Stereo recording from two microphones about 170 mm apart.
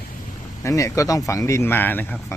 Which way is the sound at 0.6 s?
20° left (ahead or behind).